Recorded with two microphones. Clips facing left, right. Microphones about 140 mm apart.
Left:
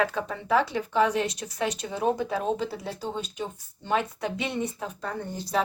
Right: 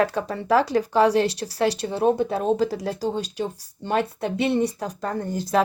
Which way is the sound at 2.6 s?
90° right.